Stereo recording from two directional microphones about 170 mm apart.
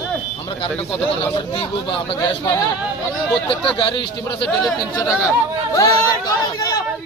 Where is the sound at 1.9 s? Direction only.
25° left (ahead or behind).